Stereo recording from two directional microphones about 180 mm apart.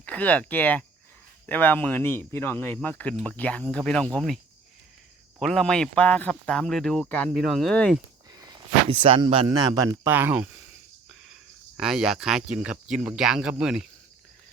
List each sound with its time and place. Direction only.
0.0 s speech: 5° left (ahead or behind)
5.4 s speech: centre (ahead or behind)
8.3 s a sound: 20° right (ahead or behind)
8.9 s speech: 30° right (ahead or behind); by 10.5 s 10° right (ahead or behind)
11.8 s speech: centre (ahead or behind)